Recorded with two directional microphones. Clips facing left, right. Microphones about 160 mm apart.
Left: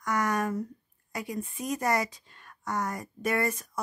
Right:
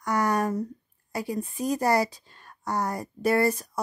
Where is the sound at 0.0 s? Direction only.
35° right (ahead or behind).